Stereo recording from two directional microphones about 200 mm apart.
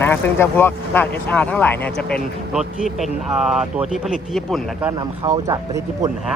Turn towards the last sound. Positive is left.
turn(degrees=-15)  # may be behind; listen again after turning